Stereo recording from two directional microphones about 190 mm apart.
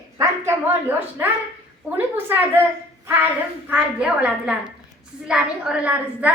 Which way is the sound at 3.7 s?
5° right (ahead or behind).